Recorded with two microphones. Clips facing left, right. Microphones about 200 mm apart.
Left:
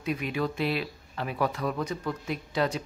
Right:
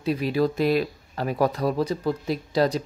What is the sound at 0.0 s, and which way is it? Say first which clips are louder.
Speech: right 7 dB; 35° right (ahead or behind).